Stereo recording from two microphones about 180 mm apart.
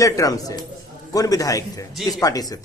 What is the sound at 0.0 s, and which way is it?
A man's voice, 20° left (ahead or behind).